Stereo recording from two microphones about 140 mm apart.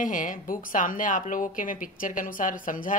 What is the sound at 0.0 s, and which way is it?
A woman's voice, 70° left (ahead or behind).